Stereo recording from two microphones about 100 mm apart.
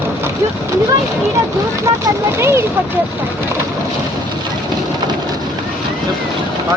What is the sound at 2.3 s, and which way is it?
Speech, 25° right (ahead or behind).